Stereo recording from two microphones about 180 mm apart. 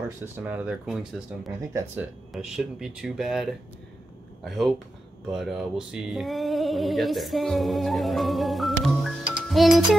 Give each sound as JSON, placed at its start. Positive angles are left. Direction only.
{"t": 0.2, "sound": "speech", "side_deg": -10}
{"t": 1.7, "sound": "speech", "side_deg": -15}
{"t": 2.3, "sound": "speech", "side_deg": 0}